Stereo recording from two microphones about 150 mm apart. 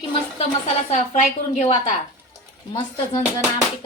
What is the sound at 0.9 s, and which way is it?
Speech, 50° left (ahead or behind).